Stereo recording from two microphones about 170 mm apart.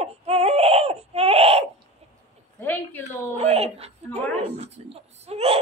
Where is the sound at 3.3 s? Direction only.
35° right (ahead or behind).